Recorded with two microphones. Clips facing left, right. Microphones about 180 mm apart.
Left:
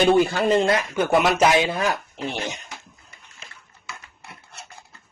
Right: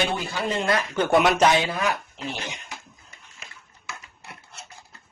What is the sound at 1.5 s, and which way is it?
Speech, 25° left (ahead or behind).